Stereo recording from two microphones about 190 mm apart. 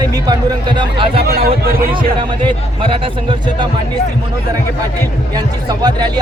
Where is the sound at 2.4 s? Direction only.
25° right (ahead or behind).